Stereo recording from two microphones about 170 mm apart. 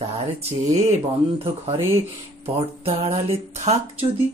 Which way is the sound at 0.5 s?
40° right (ahead or behind).